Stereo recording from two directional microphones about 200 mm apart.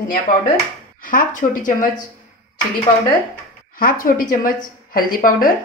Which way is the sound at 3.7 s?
45° left (ahead or behind).